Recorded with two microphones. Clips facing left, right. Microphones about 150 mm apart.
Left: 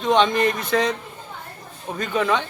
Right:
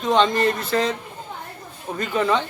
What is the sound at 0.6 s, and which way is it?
Speech, 5° right (ahead or behind).